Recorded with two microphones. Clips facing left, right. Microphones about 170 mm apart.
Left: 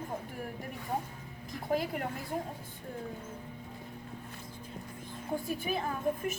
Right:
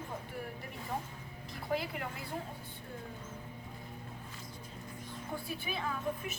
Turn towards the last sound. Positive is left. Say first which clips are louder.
# left 5 dB
turn(degrees=45)  # may be behind; listen again after turning